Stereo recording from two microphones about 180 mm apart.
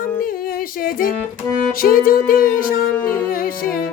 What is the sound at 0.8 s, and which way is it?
Music, 50° left (ahead or behind).